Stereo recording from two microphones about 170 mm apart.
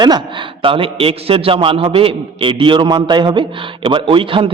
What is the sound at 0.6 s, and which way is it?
A man's voice, 30° right (ahead or behind).